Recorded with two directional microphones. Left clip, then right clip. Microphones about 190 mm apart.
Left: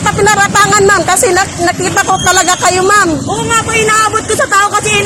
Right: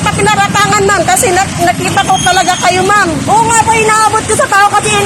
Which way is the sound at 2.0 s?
50° left (ahead or behind).